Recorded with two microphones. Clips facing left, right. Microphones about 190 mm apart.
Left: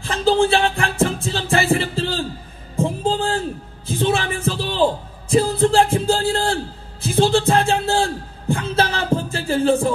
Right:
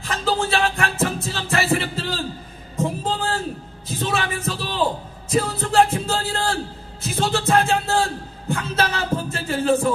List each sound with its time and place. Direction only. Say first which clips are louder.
0.0 s music: left 6 dB; 30° left (ahead or behind)